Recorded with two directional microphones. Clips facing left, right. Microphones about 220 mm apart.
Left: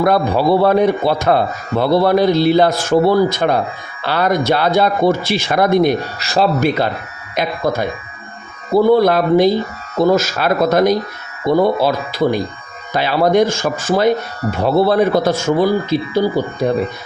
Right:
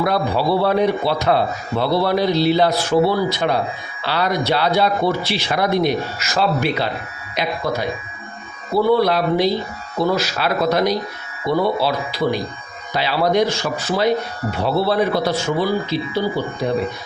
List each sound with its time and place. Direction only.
0.0 s speech: 50° left (ahead or behind)
6.1 s speech: 35° left (ahead or behind)